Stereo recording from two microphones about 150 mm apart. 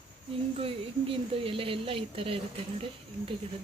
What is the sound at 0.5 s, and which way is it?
Speech, 40° right (ahead or behind).